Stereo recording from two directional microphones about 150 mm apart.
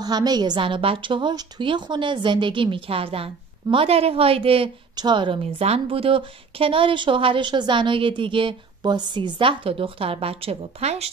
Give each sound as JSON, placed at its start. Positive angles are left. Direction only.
{"t": 0.0, "sound": "a woman's voice", "side_deg": -25}